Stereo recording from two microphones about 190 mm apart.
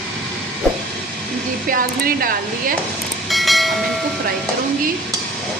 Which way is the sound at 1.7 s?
50° right (ahead or behind).